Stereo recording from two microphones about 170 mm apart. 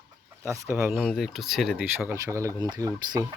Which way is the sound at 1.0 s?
Centre (ahead or behind).